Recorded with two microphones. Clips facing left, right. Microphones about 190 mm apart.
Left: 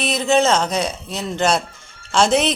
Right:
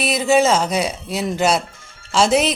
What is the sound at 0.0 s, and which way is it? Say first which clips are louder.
Speech: right 1 dB; 5° right (ahead or behind).